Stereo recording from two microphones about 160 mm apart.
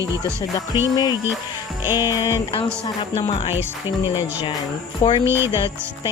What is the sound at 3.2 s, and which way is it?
Music, 35° left (ahead or behind).